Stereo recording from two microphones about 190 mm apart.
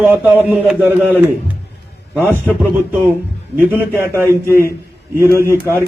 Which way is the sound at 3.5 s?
10° right (ahead or behind).